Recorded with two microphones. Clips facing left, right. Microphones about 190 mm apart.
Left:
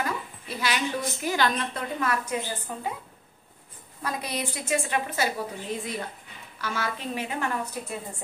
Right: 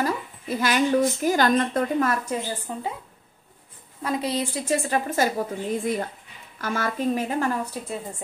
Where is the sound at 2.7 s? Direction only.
20° right (ahead or behind).